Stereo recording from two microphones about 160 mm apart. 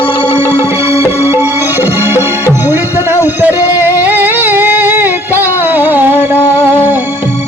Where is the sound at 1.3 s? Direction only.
15° right (ahead or behind).